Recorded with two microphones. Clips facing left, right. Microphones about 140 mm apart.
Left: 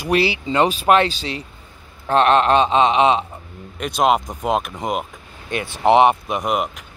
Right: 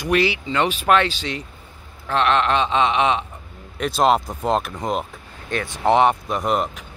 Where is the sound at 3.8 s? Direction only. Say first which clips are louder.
Even; 5° left (ahead or behind).